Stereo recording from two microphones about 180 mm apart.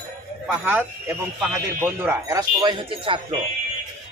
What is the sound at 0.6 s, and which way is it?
Speech, 10° right (ahead or behind).